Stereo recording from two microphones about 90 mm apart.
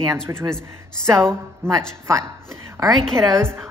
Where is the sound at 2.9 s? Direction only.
Centre (ahead or behind).